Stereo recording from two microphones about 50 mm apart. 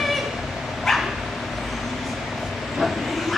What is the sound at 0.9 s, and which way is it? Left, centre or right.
Dog, centre.